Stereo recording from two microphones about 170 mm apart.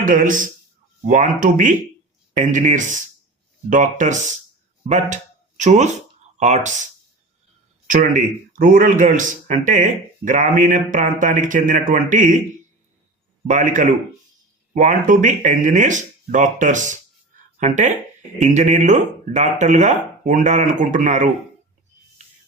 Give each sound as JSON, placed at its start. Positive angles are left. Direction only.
{"t": 0.0, "sound": "speech", "side_deg": -55}
{"t": 7.9, "sound": "speech", "side_deg": -55}
{"t": 13.5, "sound": "speech", "side_deg": -50}